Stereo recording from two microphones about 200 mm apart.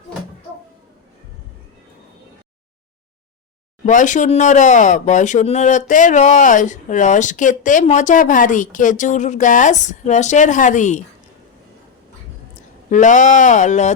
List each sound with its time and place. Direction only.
3.8 s speech: 40° left (ahead or behind)
12.9 s speech: 40° left (ahead or behind)